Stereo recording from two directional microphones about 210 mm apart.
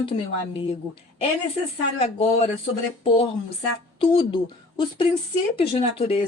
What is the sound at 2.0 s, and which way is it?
Speech, 25° left (ahead or behind).